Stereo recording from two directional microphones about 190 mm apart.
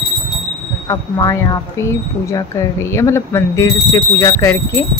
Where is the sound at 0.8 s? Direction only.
20° left (ahead or behind).